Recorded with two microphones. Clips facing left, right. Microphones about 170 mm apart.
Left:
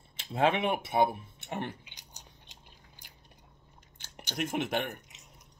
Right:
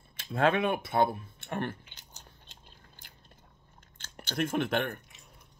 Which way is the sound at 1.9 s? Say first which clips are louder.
Even; 15° left (ahead or behind).